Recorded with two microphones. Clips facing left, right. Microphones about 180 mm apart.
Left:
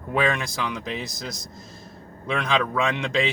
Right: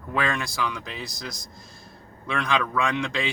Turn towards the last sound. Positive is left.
turn(degrees=20)  # may be behind; listen again after turning